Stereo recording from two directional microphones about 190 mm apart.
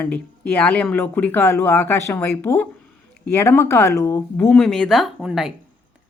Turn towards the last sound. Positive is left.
turn(degrees=-5)  # may be behind; listen again after turning